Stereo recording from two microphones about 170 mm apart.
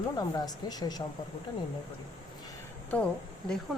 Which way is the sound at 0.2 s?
25° left (ahead or behind).